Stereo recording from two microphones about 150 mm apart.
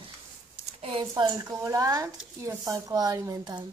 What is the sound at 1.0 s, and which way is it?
Speech, 25° right (ahead or behind).